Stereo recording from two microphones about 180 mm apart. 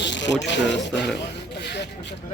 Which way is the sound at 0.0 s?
80° left.